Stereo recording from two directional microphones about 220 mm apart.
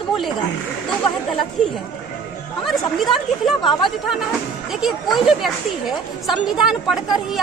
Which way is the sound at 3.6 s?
20° left (ahead or behind).